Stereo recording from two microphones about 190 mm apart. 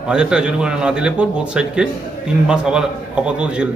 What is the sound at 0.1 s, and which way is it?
A man's voice, 5° right (ahead or behind).